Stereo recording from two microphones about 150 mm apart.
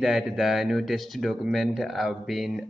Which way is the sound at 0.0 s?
Centre (ahead or behind).